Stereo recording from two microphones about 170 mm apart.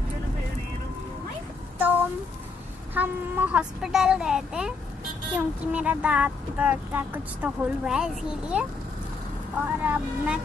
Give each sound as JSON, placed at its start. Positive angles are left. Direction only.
{"t": 2.9, "sound": "a woman's voice", "side_deg": -10}
{"t": 9.7, "sound": "speech", "side_deg": -10}